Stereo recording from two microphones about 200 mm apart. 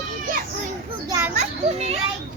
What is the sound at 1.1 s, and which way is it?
Children playing, 10° right (ahead or behind).